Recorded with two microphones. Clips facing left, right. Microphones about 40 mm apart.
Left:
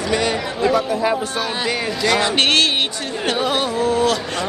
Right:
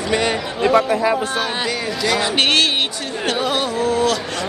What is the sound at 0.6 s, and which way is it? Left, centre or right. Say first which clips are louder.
Speech: right 3 dB; right.